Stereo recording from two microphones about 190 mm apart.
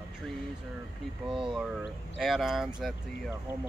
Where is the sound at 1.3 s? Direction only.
25° right (ahead or behind).